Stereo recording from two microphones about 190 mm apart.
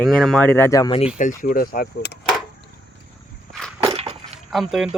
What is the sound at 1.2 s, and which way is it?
Speech, 45° left (ahead or behind).